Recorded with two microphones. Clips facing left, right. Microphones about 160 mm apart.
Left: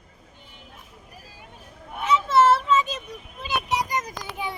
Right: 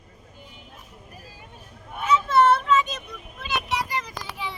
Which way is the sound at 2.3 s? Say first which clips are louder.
Left 1 dB; centre (ahead or behind).